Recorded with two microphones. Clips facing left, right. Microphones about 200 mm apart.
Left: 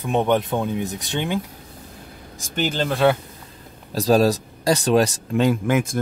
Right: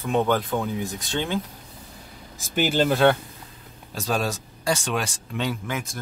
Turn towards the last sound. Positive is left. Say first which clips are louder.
# left 10 dB
turn(degrees=50)  # may be behind; listen again after turning